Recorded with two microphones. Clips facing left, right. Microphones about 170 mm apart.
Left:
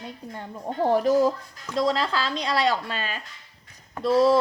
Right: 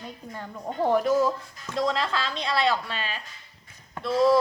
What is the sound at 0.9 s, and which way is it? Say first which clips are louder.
Speech: left 3 dB; 35° left (ahead or behind).